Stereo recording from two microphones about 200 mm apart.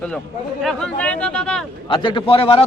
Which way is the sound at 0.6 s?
Centre (ahead or behind).